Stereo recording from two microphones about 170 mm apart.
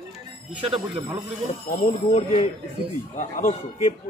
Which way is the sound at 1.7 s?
45° left (ahead or behind).